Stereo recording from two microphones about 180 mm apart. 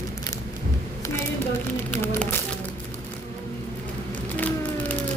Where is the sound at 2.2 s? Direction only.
10° left (ahead or behind).